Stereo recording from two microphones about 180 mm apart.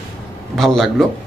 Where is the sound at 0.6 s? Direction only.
Centre (ahead or behind).